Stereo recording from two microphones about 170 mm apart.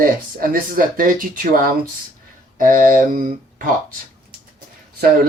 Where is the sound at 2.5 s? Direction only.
55° right (ahead or behind).